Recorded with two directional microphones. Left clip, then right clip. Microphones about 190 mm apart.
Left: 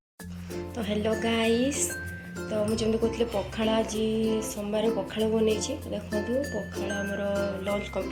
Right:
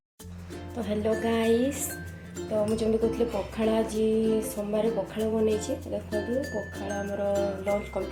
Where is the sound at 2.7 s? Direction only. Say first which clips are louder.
Right 1 dB; 5° right (ahead or behind).